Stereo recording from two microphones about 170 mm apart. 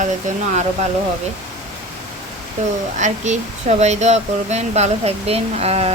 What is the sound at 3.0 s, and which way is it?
Speech, 45° right (ahead or behind).